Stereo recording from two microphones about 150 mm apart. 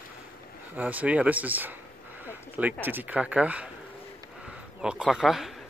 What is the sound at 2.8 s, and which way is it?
Speech, 10° right (ahead or behind).